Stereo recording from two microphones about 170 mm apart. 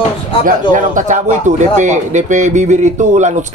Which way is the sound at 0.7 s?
50° right (ahead or behind).